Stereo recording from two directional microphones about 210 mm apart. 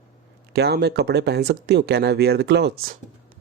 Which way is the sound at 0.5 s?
50° right (ahead or behind).